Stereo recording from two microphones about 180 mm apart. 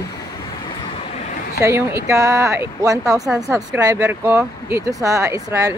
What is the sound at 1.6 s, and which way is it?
Speech, 15° right (ahead or behind).